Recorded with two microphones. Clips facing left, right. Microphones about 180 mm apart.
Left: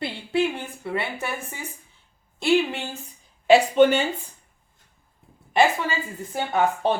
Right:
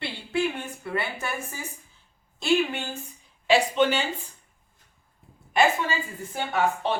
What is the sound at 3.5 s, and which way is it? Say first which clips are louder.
Speech: left 6 dB; 50° left (ahead or behind).